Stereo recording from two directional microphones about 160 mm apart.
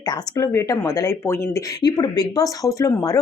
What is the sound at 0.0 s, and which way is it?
A woman's voice, 25° left (ahead or behind).